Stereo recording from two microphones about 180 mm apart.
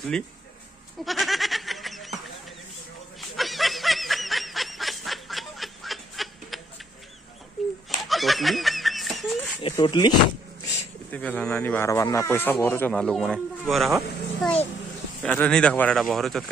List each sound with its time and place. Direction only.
0.1 s speech: 5° left (ahead or behind)
1.0 s goat: centre (ahead or behind)
3.2 s snicker: centre (ahead or behind)
7.6 s a sound: centre (ahead or behind)
8.0 s laughter: centre (ahead or behind)
9.8 s speech: 25° left (ahead or behind)
11.1 s speech: 10° left (ahead or behind)